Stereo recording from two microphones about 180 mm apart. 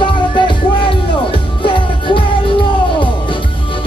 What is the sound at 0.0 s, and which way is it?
Music, 30° left (ahead or behind).